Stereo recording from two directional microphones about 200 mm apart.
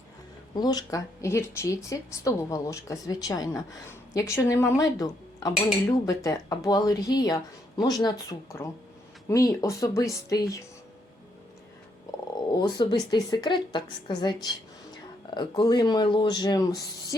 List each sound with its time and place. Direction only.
0.5 s speech: 20° left (ahead or behind)
12.3 s speech: 20° left (ahead or behind)